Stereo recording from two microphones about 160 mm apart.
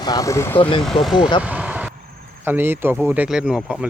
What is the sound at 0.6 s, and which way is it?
Speech, 30° left (ahead or behind).